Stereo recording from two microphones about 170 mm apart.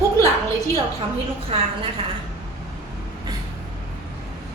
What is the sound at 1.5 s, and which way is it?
Speech, 35° right (ahead or behind).